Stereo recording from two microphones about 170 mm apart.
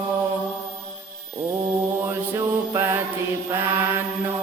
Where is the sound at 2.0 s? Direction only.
15° right (ahead or behind).